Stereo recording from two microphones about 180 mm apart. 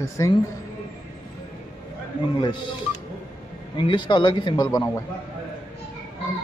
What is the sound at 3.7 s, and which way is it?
A man's voice, 25° left (ahead or behind).